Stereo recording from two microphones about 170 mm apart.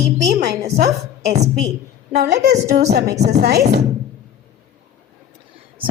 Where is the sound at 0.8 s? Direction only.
70° right (ahead or behind).